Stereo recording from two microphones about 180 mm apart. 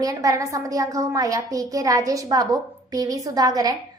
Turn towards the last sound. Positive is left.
turn(degrees=-20)  # may be behind; listen again after turning